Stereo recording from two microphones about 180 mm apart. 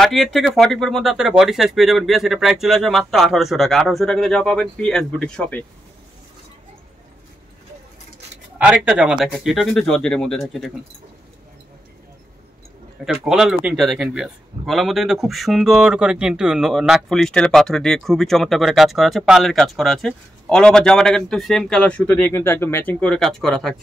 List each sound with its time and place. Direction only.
0.0 s a man's voice: centre (ahead or behind)
8.6 s a man's voice: 5° right (ahead or behind)
13.0 s a man's voice: centre (ahead or behind)